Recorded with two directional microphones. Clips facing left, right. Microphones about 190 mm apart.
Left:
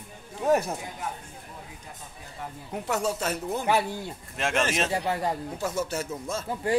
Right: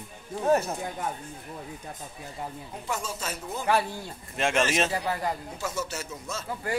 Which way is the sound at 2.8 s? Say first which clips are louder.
Left 6 dB; 65° left (ahead or behind).